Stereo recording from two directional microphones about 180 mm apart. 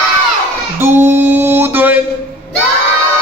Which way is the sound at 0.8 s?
15° right (ahead or behind).